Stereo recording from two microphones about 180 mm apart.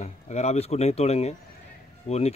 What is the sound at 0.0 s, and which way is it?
Speech, 35° left (ahead or behind).